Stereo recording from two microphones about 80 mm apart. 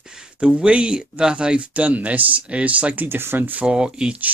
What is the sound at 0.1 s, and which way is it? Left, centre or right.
Speech, centre.